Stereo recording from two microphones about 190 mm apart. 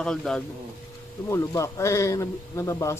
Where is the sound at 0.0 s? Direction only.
5° left (ahead or behind).